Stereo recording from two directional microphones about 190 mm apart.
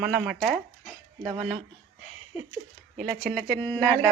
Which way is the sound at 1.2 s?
35° right (ahead or behind).